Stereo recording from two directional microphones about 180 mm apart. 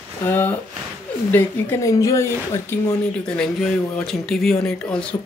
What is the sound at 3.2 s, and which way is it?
Speech, 5° left (ahead or behind).